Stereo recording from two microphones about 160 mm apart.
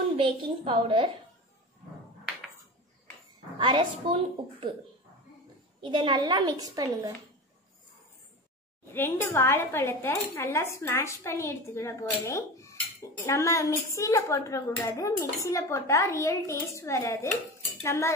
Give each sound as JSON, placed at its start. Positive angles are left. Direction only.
{"t": 0.2, "sound": "a woman's voice", "side_deg": -30}
{"t": 3.5, "sound": "a woman's voice", "side_deg": -30}
{"t": 5.8, "sound": "a woman's voice", "side_deg": -30}
{"t": 8.9, "sound": "a woman's voice", "side_deg": 15}